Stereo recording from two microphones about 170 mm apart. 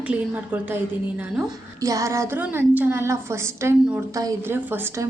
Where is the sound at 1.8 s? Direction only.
20° right (ahead or behind).